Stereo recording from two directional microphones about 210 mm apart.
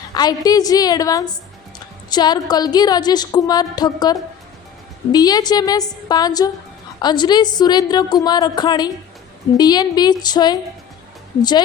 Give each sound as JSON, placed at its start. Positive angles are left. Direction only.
{"t": 0.1, "sound": "a woman's voice", "side_deg": 20}